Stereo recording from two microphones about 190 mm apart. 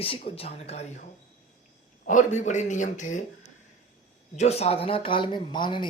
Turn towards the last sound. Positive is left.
turn(degrees=25)  # may be behind; listen again after turning